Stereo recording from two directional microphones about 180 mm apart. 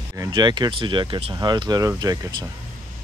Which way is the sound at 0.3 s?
25° right (ahead or behind).